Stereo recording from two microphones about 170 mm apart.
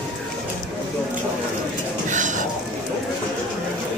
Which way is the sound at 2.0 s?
45° right (ahead or behind).